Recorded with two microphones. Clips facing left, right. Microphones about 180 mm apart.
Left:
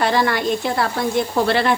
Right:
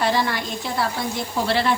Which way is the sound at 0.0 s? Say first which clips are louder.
Left 4 dB; 60° left (ahead or behind).